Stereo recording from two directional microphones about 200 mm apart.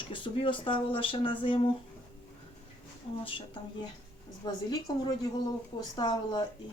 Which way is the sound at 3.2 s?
25° left (ahead or behind).